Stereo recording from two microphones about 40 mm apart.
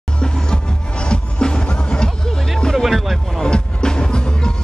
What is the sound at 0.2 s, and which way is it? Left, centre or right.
Music, centre.